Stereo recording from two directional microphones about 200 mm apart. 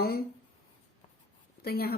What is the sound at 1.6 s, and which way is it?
Speech, 50° left (ahead or behind).